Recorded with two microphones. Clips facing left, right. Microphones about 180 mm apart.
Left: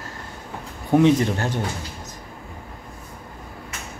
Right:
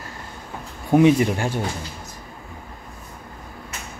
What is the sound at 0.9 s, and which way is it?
Speech, 10° right (ahead or behind).